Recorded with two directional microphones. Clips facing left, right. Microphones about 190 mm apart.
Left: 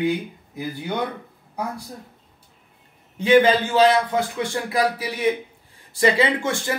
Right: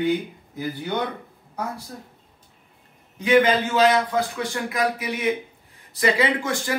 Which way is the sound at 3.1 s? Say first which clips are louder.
Left 2 dB; 30° left (ahead or behind).